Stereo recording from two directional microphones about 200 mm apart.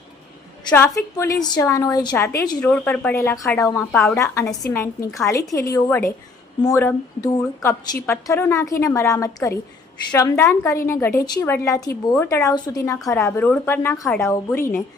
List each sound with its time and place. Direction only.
0.7 s speech: 15° left (ahead or behind)
3.9 s a woman's voice: 5° left (ahead or behind)